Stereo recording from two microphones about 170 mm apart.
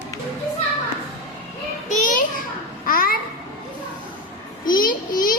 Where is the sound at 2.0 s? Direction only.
50° left (ahead or behind).